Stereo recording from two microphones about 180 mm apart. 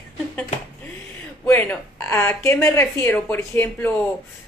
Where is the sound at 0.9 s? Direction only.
10° left (ahead or behind).